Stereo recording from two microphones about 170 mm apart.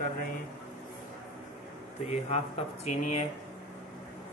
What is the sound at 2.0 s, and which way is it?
Speech, 40° left (ahead or behind).